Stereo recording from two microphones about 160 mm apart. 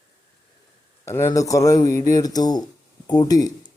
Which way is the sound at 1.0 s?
15° left (ahead or behind).